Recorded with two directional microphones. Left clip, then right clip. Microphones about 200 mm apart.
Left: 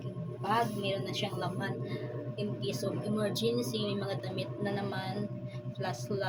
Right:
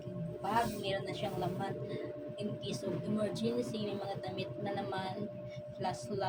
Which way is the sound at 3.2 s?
20° left (ahead or behind).